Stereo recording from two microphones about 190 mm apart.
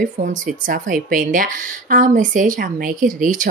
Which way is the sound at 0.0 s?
45° right (ahead or behind).